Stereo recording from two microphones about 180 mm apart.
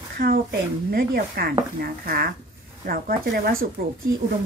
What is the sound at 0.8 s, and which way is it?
A woman's voice, 55° right (ahead or behind).